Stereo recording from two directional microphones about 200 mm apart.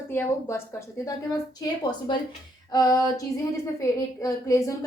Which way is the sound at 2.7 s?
20° left (ahead or behind).